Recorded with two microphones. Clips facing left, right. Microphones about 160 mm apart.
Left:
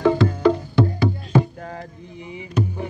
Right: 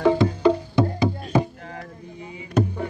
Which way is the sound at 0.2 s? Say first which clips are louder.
Left 1 dB; 15° right (ahead or behind).